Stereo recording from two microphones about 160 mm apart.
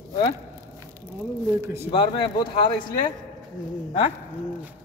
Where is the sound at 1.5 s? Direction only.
15° right (ahead or behind).